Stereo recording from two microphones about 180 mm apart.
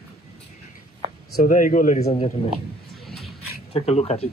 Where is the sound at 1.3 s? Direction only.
50° left (ahead or behind).